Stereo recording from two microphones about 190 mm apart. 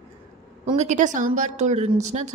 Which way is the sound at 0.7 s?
40° right (ahead or behind).